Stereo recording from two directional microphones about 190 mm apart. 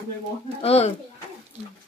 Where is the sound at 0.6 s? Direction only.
35° left (ahead or behind).